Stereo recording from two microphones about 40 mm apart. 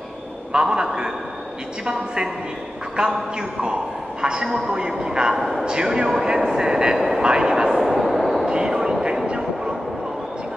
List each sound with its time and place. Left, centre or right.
0.5 s a man's voice: centre
3.0 s speech: right
4.2 s speech: centre
5.3 s a man's voice: centre
5.7 s speech: right
7.8 s a sound: centre
8.5 s vehicle: centre